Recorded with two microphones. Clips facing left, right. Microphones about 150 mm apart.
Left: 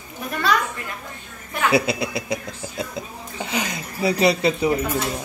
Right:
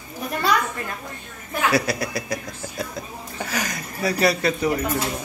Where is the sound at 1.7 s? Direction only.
25° left (ahead or behind).